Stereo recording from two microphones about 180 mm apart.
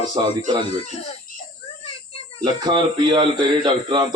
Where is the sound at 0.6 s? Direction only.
35° left (ahead or behind).